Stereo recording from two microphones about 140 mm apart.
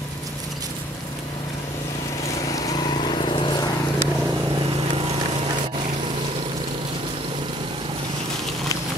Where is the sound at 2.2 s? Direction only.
25° left (ahead or behind).